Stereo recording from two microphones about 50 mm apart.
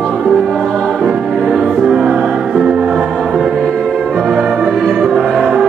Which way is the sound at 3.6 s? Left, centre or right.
Centre.